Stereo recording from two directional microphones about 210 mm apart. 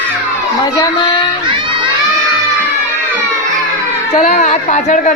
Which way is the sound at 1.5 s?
20° right (ahead or behind).